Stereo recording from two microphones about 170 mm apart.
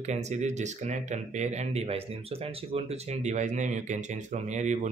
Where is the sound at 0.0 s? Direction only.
40° right (ahead or behind).